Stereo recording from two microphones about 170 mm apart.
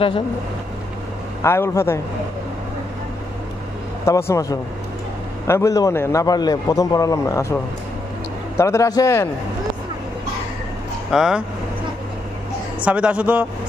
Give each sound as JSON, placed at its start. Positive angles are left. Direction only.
{"t": 1.4, "sound": "a man's voice", "side_deg": 15}
{"t": 4.0, "sound": "a man's voice", "side_deg": 15}
{"t": 8.5, "sound": "a man's voice", "side_deg": 15}
{"t": 11.1, "sound": "speech", "side_deg": -5}
{"t": 12.8, "sound": "a man's voice", "side_deg": -5}